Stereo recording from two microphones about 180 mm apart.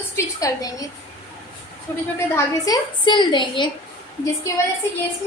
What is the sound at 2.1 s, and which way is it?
A woman's voice, 20° left (ahead or behind).